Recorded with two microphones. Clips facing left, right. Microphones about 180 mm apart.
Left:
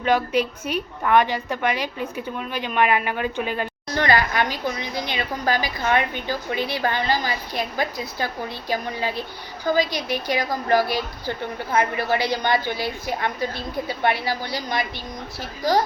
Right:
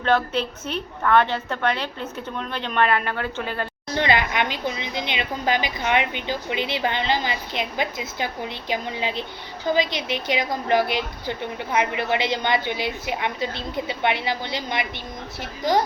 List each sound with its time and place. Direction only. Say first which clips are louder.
0.0 s a woman's voice: left 1 dB; 10° left (ahead or behind)
3.9 s a woman's voice: left 1 dB; 20° right (ahead or behind)